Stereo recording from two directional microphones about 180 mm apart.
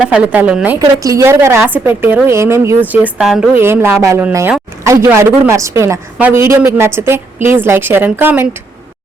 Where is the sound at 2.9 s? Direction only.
5° right (ahead or behind).